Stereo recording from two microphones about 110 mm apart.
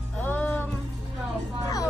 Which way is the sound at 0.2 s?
15° left (ahead or behind).